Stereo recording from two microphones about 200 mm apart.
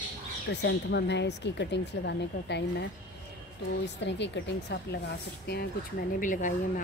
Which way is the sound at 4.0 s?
60° left (ahead or behind).